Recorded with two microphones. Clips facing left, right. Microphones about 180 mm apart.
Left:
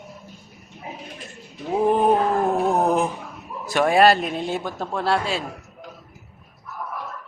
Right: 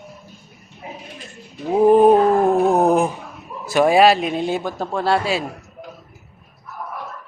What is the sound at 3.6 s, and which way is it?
Speech, 5° right (ahead or behind).